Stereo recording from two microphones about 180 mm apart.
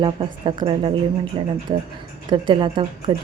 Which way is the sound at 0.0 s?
30° right (ahead or behind).